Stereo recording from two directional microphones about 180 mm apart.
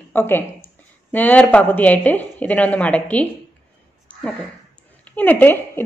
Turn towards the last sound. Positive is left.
turn(degrees=10)  # may be behind; listen again after turning